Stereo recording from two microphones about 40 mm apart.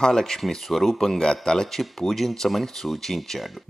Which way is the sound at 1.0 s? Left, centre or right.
Centre.